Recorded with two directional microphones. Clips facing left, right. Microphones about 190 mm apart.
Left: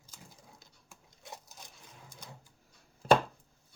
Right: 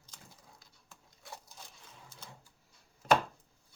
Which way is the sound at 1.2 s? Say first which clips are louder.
Left 1 dB; 20° left (ahead or behind).